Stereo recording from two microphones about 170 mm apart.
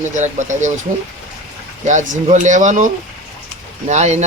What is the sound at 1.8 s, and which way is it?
Speech, 45° right (ahead or behind).